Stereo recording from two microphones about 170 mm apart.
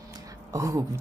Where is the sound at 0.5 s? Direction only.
15° right (ahead or behind).